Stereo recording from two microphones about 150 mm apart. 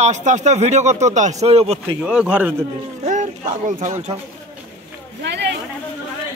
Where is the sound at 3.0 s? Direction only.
55° right (ahead or behind).